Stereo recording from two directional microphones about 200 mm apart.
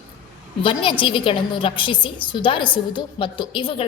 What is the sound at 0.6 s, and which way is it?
A woman's voice, 25° left (ahead or behind).